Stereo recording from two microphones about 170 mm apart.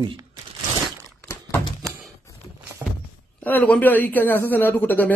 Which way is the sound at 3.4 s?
10° left (ahead or behind).